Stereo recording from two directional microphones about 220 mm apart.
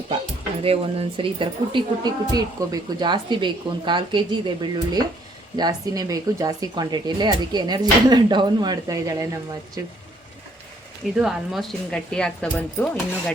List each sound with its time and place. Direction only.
0.6 s speech: 25° right (ahead or behind)
11.1 s speech: centre (ahead or behind)